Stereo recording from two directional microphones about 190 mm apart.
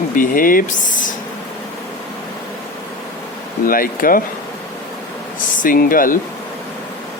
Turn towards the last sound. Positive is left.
turn(degrees=45)  # may be behind; listen again after turning